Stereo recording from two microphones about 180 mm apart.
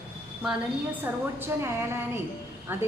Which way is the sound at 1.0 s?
15° right (ahead or behind).